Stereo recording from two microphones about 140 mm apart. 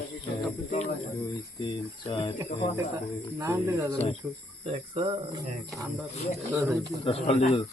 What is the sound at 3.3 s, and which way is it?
Speech, 20° right (ahead or behind).